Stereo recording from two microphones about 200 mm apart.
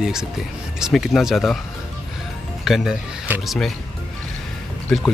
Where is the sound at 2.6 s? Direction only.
Centre (ahead or behind).